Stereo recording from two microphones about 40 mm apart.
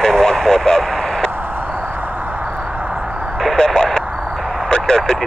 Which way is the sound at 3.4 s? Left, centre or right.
Centre.